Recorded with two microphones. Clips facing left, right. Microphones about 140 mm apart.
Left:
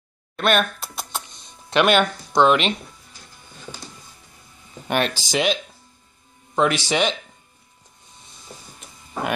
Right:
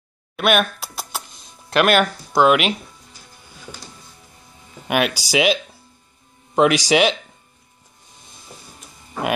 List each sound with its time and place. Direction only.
0.4 s music: 10° right (ahead or behind)
4.8 s speech: 10° right (ahead or behind)